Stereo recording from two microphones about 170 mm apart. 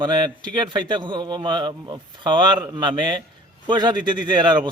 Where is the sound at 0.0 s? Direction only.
25° right (ahead or behind).